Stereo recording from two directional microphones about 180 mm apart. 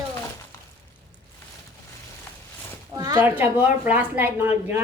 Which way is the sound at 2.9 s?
20° right (ahead or behind).